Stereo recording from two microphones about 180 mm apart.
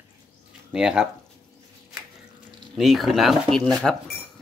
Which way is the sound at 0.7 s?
5° right (ahead or behind).